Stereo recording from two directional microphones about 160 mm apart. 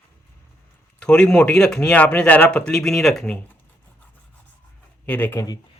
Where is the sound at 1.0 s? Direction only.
5° left (ahead or behind).